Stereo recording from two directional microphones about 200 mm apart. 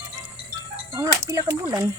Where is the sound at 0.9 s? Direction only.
15° right (ahead or behind).